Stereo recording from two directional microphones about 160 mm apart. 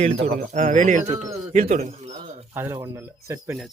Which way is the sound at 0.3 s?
60° right (ahead or behind).